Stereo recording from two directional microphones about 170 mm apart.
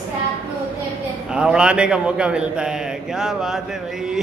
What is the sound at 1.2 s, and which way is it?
A man's voice, 5° right (ahead or behind).